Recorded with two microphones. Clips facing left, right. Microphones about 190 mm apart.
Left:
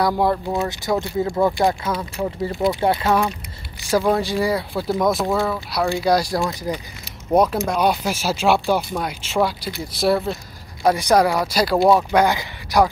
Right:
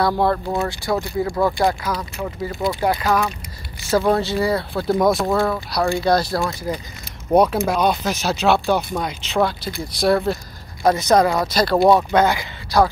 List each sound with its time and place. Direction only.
0.0 s speech: 15° left (ahead or behind)
4.1 s speech: 15° left (ahead or behind)
7.3 s speech: centre (ahead or behind)
7.8 s speech: 10° left (ahead or behind)